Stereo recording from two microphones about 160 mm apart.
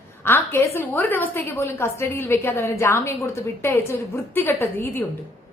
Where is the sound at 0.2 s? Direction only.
15° left (ahead or behind).